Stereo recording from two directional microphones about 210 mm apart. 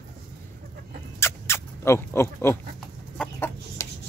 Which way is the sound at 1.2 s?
10° left (ahead or behind).